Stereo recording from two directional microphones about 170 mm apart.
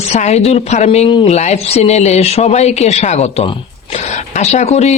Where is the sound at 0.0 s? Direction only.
40° left (ahead or behind).